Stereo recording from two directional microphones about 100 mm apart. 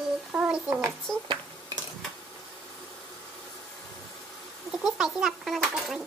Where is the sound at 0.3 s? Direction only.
15° right (ahead or behind).